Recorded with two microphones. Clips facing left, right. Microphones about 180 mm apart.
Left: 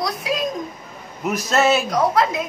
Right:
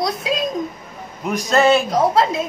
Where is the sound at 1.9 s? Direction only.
25° right (ahead or behind).